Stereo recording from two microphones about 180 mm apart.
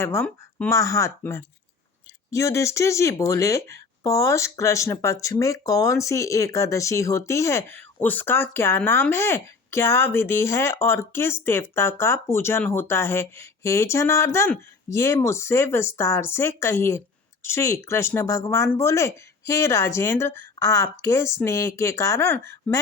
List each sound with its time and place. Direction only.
0.0 s speech: 15° left (ahead or behind)